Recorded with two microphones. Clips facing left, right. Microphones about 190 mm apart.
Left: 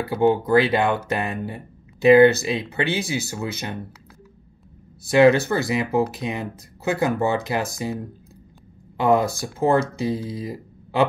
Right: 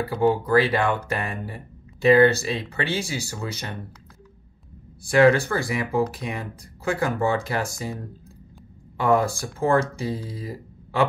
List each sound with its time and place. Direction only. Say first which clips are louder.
0.1 s speech: left 3 dB; 25° left (ahead or behind)
5.1 s speech: left 2 dB; 20° left (ahead or behind)
8.9 s speech: left 2 dB; 20° left (ahead or behind)